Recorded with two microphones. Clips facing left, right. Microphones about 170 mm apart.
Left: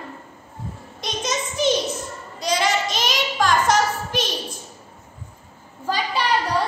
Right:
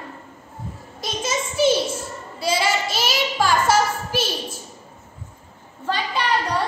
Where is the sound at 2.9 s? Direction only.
5° right (ahead or behind).